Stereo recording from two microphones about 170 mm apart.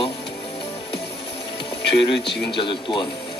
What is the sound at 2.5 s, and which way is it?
Speech, 30° left (ahead or behind).